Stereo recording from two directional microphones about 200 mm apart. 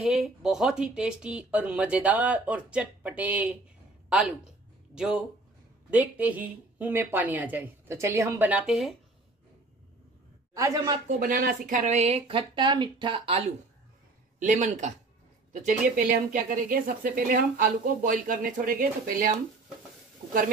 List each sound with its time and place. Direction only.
0.0 s speech: 5° right (ahead or behind)
4.9 s speech: 5° right (ahead or behind)
10.5 s speech: 15° right (ahead or behind)
11.1 s speech: 45° right (ahead or behind); by 13.4 s 25° right (ahead or behind)
14.4 s speech: 40° right (ahead or behind)